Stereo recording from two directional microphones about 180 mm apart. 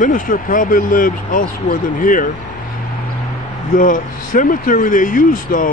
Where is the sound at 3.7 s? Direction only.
45° left (ahead or behind).